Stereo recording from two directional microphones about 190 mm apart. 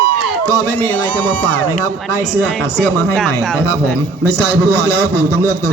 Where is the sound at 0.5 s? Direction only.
15° left (ahead or behind).